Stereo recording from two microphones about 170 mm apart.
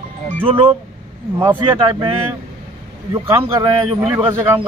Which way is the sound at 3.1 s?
15° right (ahead or behind).